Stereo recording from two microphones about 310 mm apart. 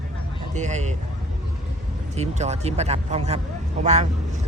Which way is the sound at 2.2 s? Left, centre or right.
Right.